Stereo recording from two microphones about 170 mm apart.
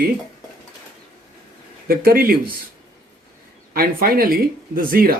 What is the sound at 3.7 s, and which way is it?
Speech, 60° right (ahead or behind).